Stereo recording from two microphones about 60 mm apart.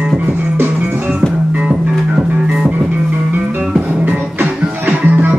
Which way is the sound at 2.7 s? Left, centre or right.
Right.